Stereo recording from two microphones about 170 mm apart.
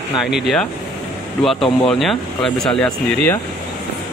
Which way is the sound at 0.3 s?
Centre (ahead or behind).